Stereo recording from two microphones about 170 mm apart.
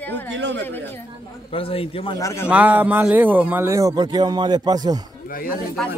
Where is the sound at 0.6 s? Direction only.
10° left (ahead or behind).